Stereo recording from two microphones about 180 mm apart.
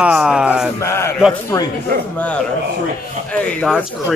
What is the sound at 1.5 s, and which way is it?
Speech, 15° left (ahead or behind).